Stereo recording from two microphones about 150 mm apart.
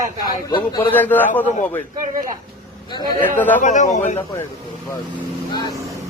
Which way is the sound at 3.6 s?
55° left (ahead or behind).